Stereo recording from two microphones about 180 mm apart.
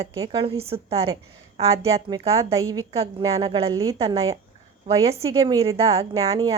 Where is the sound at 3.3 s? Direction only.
30° right (ahead or behind).